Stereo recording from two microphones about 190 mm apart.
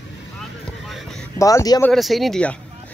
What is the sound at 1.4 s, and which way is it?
Speech, 20° left (ahead or behind).